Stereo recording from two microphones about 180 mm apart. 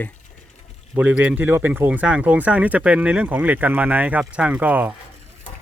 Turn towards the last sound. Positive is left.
turn(degrees=-10)  # may be behind; listen again after turning